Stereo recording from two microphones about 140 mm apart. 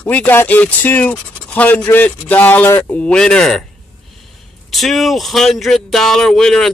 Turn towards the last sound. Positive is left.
turn(degrees=5)  # may be behind; listen again after turning